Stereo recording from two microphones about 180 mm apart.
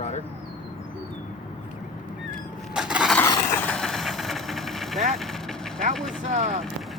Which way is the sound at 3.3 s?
15° left (ahead or behind).